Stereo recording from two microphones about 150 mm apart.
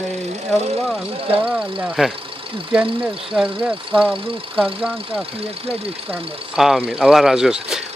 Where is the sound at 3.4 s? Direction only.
35° right (ahead or behind).